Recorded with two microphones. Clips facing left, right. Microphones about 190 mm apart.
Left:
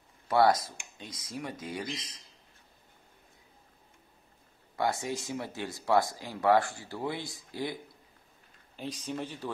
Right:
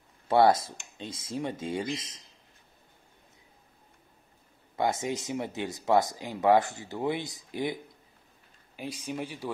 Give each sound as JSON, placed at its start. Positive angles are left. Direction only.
{"t": 0.3, "sound": "speech", "side_deg": -25}
{"t": 4.7, "sound": "speech", "side_deg": -20}